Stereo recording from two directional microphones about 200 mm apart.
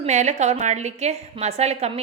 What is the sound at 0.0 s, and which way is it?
A woman's voice, 35° right (ahead or behind).